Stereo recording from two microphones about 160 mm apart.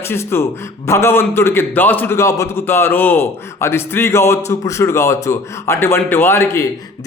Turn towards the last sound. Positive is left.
turn(degrees=15)  # may be behind; listen again after turning